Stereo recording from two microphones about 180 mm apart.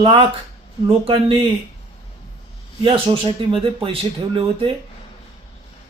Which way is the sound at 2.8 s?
30° right (ahead or behind).